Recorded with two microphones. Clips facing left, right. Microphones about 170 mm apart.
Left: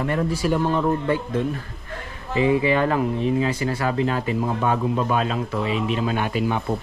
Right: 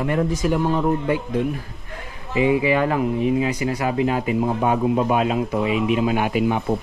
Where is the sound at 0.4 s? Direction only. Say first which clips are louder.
Even; 20° right (ahead or behind).